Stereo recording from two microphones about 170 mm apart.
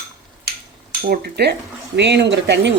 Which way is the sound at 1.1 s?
70° right (ahead or behind).